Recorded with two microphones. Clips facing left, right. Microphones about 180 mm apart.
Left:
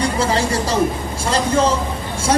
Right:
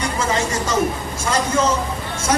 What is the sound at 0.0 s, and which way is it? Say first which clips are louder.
Speech: left 3 dB; 35° left (ahead or behind).